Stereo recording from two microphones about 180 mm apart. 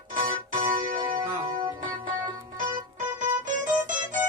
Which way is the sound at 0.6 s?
45° right (ahead or behind).